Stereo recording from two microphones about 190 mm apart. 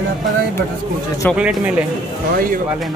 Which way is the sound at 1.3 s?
5° right (ahead or behind).